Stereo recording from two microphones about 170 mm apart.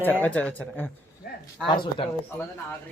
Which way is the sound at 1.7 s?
30° left (ahead or behind).